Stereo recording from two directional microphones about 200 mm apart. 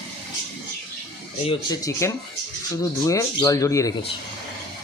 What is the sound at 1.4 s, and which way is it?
Speech, 20° left (ahead or behind).